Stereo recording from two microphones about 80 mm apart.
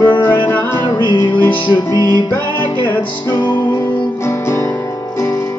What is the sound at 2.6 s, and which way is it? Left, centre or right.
Music, left.